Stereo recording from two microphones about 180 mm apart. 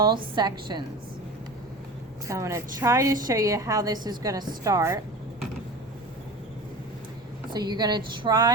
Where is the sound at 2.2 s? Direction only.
15° right (ahead or behind).